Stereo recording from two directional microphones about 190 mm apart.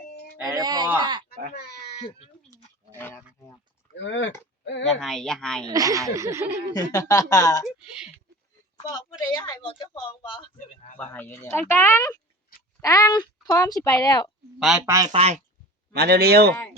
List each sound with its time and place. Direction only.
0.5 s speech: 20° right (ahead or behind)
1.5 s speech: 60° left (ahead or behind)
2.0 s a sound: 30° left (ahead or behind)
2.9 s speech: 10° left (ahead or behind)
3.9 s a sound: 70° left (ahead or behind)
4.9 s speech: centre (ahead or behind)
5.6 s speech: 20° right (ahead or behind)
6.7 s speech: 20° left (ahead or behind)
7.8 s a sound: 5° right (ahead or behind)
8.8 s a woman's voice: 20° left (ahead or behind)
10.9 s speech: 10° left (ahead or behind)
14.8 s speech: 15° right (ahead or behind)
15.1 s speech: 35° right (ahead or behind)
15.9 s speech: 55° right (ahead or behind)